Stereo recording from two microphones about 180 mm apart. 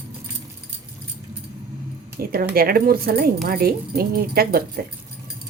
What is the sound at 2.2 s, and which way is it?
Speech, 55° right (ahead or behind).